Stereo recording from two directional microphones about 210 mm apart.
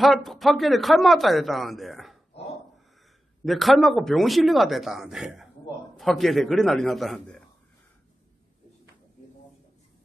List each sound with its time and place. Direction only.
0.0 s a man's voice: centre (ahead or behind)
3.4 s a man's voice: centre (ahead or behind)